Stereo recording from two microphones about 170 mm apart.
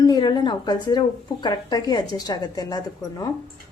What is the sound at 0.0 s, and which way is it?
Speech, 20° left (ahead or behind).